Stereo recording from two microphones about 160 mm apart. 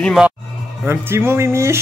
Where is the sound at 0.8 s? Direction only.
15° right (ahead or behind).